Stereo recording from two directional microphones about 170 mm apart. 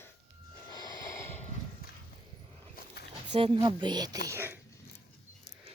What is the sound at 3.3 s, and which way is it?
Speech, 30° right (ahead or behind).